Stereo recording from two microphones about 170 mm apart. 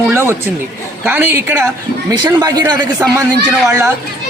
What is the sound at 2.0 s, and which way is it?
Speech, 25° right (ahead or behind).